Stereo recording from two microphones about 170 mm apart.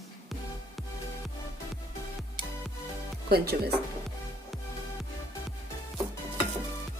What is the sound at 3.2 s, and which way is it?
Speech, 65° right (ahead or behind).